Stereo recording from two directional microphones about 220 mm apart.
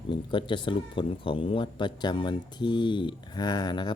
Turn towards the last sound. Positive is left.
turn(degrees=20)  # may be behind; listen again after turning